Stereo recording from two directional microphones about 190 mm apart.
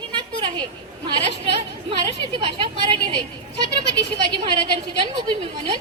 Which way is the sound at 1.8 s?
25° right (ahead or behind).